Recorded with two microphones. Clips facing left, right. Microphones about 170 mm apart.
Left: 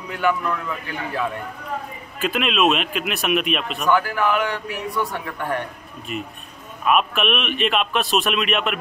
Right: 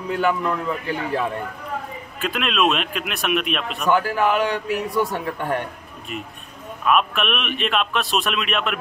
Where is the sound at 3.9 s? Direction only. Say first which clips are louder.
Right 1 dB; 30° right (ahead or behind).